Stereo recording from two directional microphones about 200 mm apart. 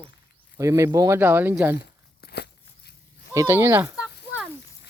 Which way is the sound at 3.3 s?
10° right (ahead or behind).